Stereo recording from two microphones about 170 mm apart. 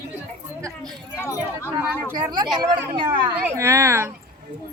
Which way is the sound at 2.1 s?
25° right (ahead or behind).